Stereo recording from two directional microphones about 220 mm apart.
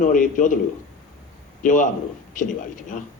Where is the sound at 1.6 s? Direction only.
35° left (ahead or behind).